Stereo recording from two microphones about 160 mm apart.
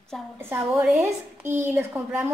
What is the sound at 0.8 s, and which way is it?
A woman's voice, 15° right (ahead or behind).